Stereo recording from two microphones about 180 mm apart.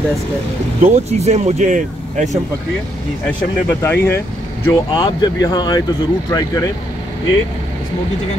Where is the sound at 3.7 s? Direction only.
15° left (ahead or behind).